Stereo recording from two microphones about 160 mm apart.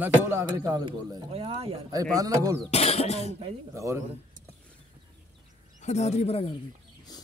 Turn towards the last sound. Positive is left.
turn(degrees=40)  # may be behind; listen again after turning